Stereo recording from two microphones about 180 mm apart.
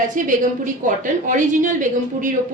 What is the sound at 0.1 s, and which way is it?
A woman's voice, 45° right (ahead or behind).